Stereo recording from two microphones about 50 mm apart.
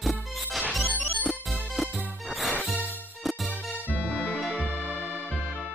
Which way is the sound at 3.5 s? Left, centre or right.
Left.